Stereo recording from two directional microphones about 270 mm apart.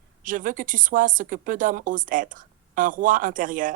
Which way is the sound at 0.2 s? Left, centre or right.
Right.